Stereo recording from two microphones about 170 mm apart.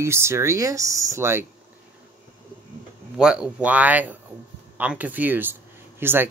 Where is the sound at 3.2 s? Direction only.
5° right (ahead or behind).